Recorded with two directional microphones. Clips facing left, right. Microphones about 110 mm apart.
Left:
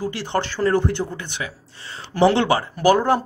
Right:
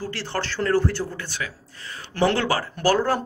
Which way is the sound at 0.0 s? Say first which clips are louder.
Left 5 dB; 15° left (ahead or behind).